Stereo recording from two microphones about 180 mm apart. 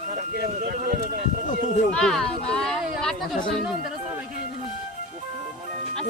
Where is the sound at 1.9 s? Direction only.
5° left (ahead or behind).